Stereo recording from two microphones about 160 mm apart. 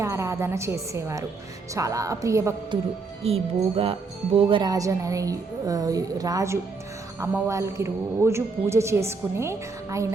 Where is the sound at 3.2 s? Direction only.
40° right (ahead or behind).